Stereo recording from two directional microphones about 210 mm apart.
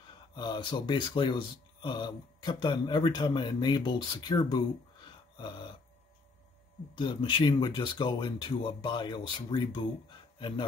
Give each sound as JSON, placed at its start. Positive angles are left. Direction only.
{"t": 0.3, "sound": "speech", "side_deg": 20}
{"t": 7.0, "sound": "speech", "side_deg": 25}